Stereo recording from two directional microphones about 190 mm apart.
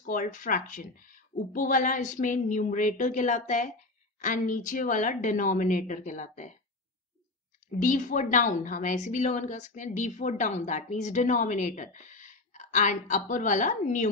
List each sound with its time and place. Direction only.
0.0 s speech: 45° left (ahead or behind)
7.8 s a woman's voice: 45° left (ahead or behind)